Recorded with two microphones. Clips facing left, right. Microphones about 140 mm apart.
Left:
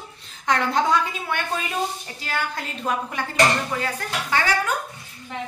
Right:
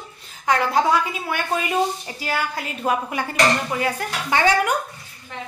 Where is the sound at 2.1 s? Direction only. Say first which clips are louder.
Right 2 dB; 5° right (ahead or behind).